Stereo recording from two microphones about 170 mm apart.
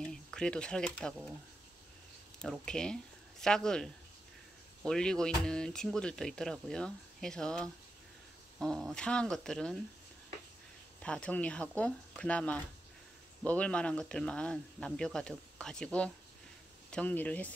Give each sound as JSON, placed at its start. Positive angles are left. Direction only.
{"t": 0.0, "sound": "speech", "side_deg": 5}
{"t": 2.6, "sound": "speech", "side_deg": 5}
{"t": 11.0, "sound": "speech", "side_deg": 5}